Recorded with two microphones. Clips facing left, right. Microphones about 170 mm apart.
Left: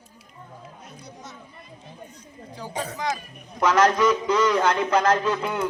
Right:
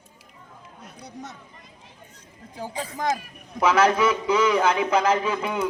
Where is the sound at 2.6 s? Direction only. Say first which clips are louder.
Right 1 dB; 50° right (ahead or behind).